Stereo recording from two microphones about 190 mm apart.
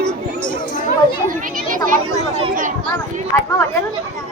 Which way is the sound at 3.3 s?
15° left (ahead or behind).